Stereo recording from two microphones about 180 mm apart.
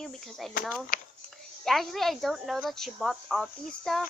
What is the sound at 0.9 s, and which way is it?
Speech, 50° left (ahead or behind).